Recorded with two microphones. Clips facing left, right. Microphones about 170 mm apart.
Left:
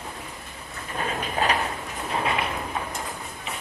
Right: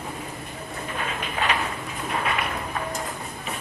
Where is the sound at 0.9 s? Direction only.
35° left (ahead or behind).